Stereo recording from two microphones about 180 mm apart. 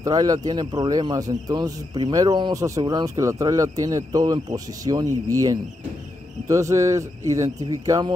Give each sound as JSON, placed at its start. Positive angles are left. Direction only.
{"t": 0.0, "sound": "speech", "side_deg": -20}